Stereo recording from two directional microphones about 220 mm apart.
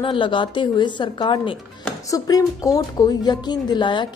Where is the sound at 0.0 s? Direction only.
20° left (ahead or behind).